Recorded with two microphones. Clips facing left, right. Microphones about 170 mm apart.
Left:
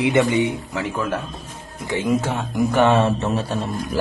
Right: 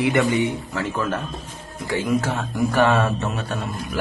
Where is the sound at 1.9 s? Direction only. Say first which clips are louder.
Left 1 dB; 20° left (ahead or behind).